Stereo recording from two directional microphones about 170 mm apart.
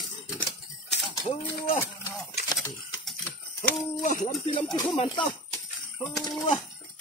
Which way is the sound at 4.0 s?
50° left (ahead or behind).